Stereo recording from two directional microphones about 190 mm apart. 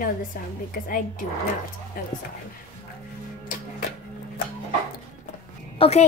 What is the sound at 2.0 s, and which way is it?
Speech, 50° left (ahead or behind).